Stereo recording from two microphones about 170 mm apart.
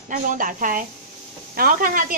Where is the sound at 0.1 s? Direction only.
50° right (ahead or behind).